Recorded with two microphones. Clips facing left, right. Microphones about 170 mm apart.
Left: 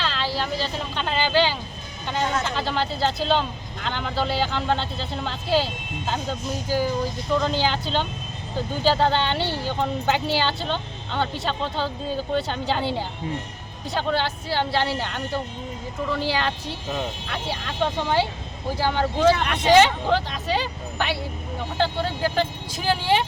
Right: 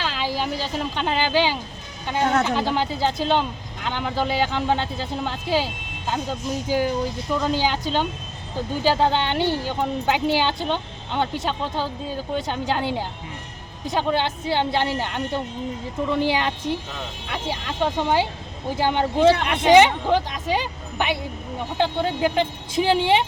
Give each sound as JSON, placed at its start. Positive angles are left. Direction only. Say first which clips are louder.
{"t": 0.0, "sound": "speech", "louder": "right 1 dB", "side_deg": -10}
{"t": 2.1, "sound": "speech", "louder": "right 5 dB", "side_deg": -60}
{"t": 2.6, "sound": "speech", "louder": "right 2 dB", "side_deg": -15}